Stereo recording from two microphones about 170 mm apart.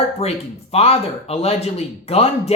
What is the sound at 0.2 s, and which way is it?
Speech, 35° left (ahead or behind).